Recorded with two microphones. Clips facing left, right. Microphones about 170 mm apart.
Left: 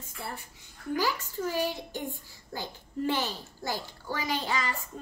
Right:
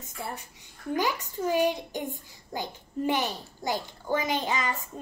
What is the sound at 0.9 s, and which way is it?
A child's voice, 20° right (ahead or behind).